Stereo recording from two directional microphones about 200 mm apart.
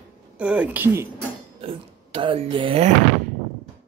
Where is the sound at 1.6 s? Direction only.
25° right (ahead or behind).